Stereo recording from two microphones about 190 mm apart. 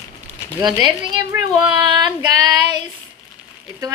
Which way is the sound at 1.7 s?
20° right (ahead or behind).